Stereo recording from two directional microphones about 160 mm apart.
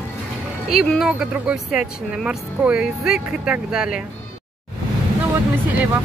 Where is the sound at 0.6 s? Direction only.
Centre (ahead or behind).